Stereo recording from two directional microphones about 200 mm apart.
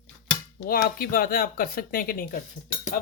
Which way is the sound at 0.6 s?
45° left (ahead or behind).